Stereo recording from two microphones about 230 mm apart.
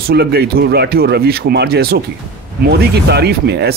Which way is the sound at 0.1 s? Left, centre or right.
Right.